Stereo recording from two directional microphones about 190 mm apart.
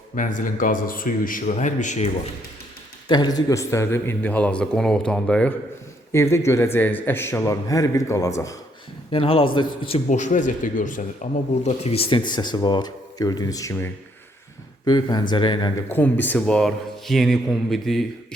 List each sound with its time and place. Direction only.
0.2 s a man's voice: 45° left (ahead or behind)
3.1 s a man's voice: 20° left (ahead or behind)
9.1 s a man's voice: 30° left (ahead or behind)
15.9 s speech: 10° left (ahead or behind)